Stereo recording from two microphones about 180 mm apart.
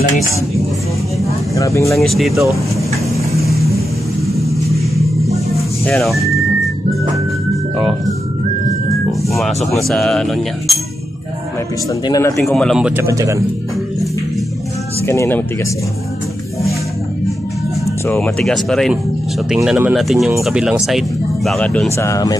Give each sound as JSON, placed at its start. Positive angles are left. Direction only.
{"t": 1.5, "sound": "speech", "side_deg": 15}
{"t": 2.0, "sound": "speech", "side_deg": 0}
{"t": 3.2, "sound": "vehicle", "side_deg": 15}
{"t": 4.4, "sound": "vehicle", "side_deg": 0}
{"t": 5.9, "sound": "speech", "side_deg": 0}
{"t": 9.7, "sound": "speech", "side_deg": 0}
{"t": 12.1, "sound": "speech", "side_deg": 15}
{"t": 12.5, "sound": "speech", "side_deg": 0}
{"t": 13.0, "sound": "speech", "side_deg": -15}
{"t": 15.0, "sound": "speech", "side_deg": 15}
{"t": 18.0, "sound": "speech", "side_deg": 10}
{"t": 18.4, "sound": "speech", "side_deg": 0}
{"t": 21.9, "sound": "speech", "side_deg": 15}